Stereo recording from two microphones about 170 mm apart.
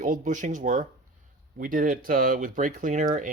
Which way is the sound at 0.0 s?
50° right (ahead or behind).